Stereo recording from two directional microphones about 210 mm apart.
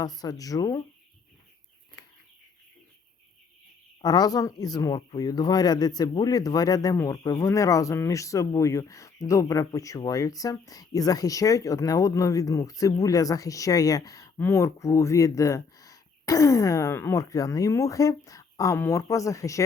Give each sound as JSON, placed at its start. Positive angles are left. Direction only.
{"t": 0.0, "sound": "speech", "side_deg": 20}
{"t": 4.0, "sound": "speech", "side_deg": 20}